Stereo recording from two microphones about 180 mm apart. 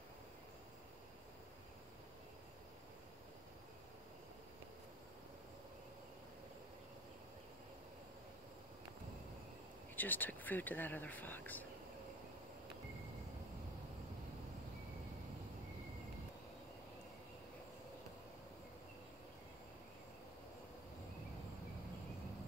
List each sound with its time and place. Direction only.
9.9 s speech: 10° left (ahead or behind)